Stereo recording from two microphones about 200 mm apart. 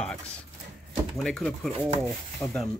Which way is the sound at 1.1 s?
Centre (ahead or behind).